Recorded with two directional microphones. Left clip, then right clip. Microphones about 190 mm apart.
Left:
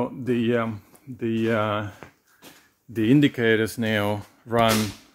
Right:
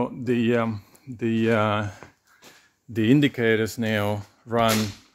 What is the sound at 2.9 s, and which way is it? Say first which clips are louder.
Speech: even; 40° right (ahead or behind).